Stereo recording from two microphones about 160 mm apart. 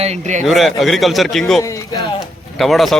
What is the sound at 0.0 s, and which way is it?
Speech, 45° right (ahead or behind).